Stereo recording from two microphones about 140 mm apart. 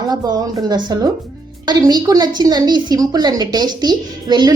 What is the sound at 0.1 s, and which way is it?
A woman's voice, 30° right (ahead or behind).